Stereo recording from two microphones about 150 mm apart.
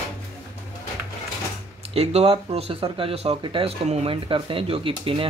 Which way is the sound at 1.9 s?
40° right (ahead or behind).